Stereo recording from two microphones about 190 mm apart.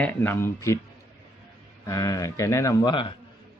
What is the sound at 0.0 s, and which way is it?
Speech, 10° left (ahead or behind).